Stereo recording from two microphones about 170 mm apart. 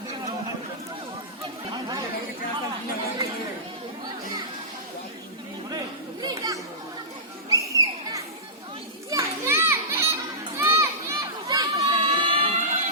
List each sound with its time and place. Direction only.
1.7 s chatter: 20° right (ahead or behind)
6.2 s children playing: 20° right (ahead or behind)
7.5 s a sound: 20° right (ahead or behind)
9.0 s children playing: 20° right (ahead or behind)
10.6 s crowd: 15° right (ahead or behind); by 12.8 s 40° right (ahead or behind)